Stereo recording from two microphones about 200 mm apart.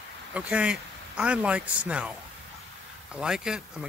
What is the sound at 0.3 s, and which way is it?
A man's voice, 5° right (ahead or behind).